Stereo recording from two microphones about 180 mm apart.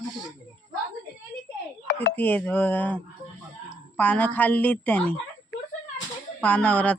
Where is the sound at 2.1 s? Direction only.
10° left (ahead or behind).